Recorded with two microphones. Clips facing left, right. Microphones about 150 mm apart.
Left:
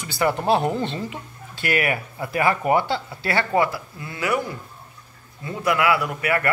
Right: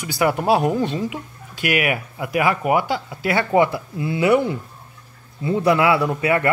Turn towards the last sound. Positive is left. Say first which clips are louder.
# right 4 dB
turn(degrees=-25)  # may be behind; listen again after turning